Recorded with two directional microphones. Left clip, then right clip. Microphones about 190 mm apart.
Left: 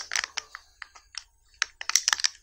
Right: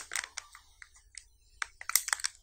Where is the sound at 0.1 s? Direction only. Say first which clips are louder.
Left 8 dB; 20° left (ahead or behind).